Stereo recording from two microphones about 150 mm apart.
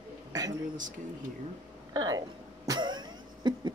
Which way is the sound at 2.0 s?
25° right (ahead or behind).